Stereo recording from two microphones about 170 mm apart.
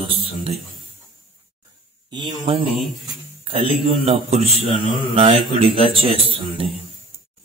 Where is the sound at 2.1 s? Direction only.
25° right (ahead or behind).